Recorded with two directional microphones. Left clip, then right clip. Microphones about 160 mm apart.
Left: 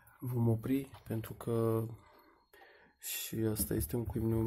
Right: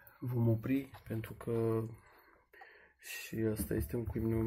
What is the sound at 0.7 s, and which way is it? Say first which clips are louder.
Speech: left 1 dB; 30° left (ahead or behind).